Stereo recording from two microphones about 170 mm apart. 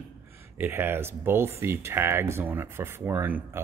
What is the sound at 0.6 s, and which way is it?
Speech, 10° right (ahead or behind).